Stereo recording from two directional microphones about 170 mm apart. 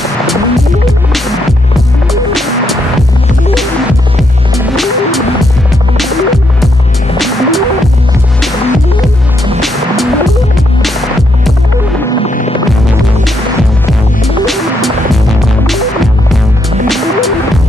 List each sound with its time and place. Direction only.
0.0 s music: centre (ahead or behind)
4.7 s music: centre (ahead or behind)
9.6 s music: centre (ahead or behind)
12.3 s throbbing: 45° left (ahead or behind)
14.2 s music: centre (ahead or behind)